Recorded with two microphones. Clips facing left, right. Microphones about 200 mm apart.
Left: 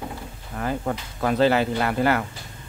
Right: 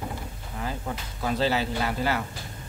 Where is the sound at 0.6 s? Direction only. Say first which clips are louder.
Left 6 dB; 55° left (ahead or behind).